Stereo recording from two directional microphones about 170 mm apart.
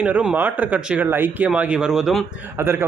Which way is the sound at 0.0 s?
5° right (ahead or behind).